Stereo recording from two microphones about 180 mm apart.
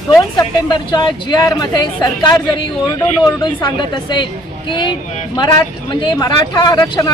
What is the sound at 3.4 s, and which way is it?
Speech, 25° left (ahead or behind).